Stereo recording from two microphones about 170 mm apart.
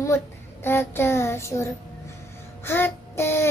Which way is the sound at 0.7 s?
15° left (ahead or behind).